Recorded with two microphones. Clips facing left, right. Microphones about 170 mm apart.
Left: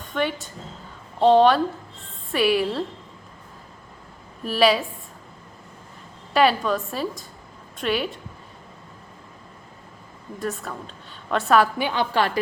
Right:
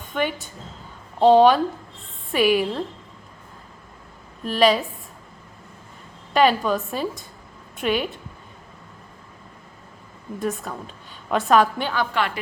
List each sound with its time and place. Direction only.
0.1 s a woman's voice: 10° right (ahead or behind)
2.3 s a woman's voice: centre (ahead or behind)
4.4 s a woman's voice: 5° left (ahead or behind)
6.3 s a woman's voice: 5° left (ahead or behind)
10.4 s a woman's voice: centre (ahead or behind)
12.1 s a woman's voice: 35° left (ahead or behind)